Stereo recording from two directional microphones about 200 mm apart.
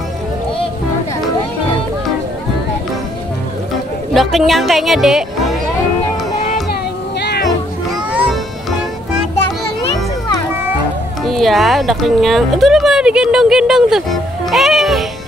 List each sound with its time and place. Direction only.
4.1 s speech: centre (ahead or behind)
7.2 s music: 55° left (ahead or behind)
11.2 s speech: centre (ahead or behind)